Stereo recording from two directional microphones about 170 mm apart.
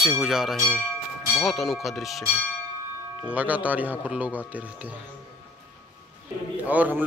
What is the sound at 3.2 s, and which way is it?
Speech, 10° right (ahead or behind).